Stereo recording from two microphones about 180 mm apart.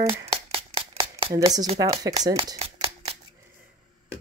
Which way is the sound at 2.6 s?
30° right (ahead or behind).